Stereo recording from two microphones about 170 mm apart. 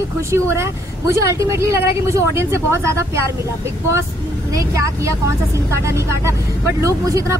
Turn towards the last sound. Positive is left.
turn(degrees=-20)  # may be behind; listen again after turning